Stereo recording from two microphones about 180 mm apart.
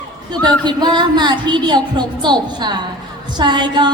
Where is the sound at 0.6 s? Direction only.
25° right (ahead or behind).